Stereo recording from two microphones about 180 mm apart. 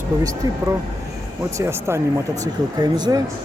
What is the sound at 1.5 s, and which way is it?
Speech, 15° right (ahead or behind).